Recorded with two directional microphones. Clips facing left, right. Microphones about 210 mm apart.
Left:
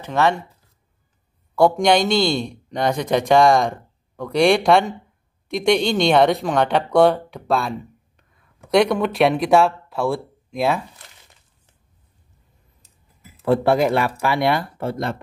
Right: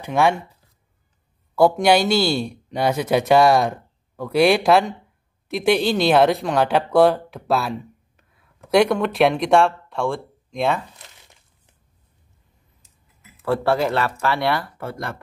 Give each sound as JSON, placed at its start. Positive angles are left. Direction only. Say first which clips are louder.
{"t": 0.0, "sound": "speech", "louder": "right 1 dB", "side_deg": -10}
{"t": 1.5, "sound": "speech", "louder": "even", "side_deg": -5}
{"t": 13.4, "sound": "speech", "louder": "left 3 dB", "side_deg": 15}